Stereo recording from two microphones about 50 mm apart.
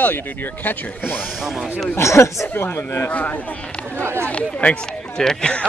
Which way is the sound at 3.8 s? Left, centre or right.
Right.